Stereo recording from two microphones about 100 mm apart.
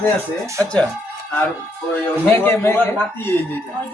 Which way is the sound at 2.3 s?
20° left (ahead or behind).